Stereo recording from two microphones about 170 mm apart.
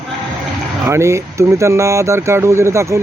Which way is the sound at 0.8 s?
15° right (ahead or behind).